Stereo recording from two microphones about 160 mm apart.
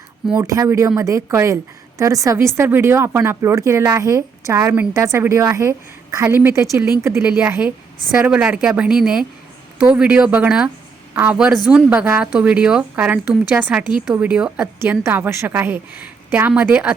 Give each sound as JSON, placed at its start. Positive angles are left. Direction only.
{"t": 0.4, "sound": "a woman's voice", "side_deg": -20}